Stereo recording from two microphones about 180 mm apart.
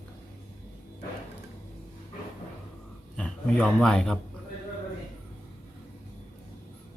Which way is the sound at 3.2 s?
5° left (ahead or behind).